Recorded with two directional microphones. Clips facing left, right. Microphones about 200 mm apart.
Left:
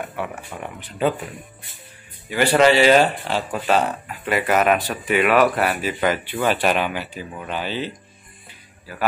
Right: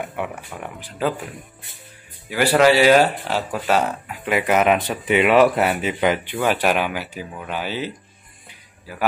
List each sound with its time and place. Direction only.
0.0 s speech: 15° right (ahead or behind)
0.6 s speech: centre (ahead or behind)
2.2 s speech: 10° right (ahead or behind)